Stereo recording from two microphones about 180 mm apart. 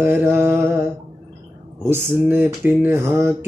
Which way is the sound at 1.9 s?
10° right (ahead or behind).